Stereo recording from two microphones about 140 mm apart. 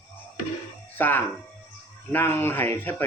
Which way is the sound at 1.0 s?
15° left (ahead or behind).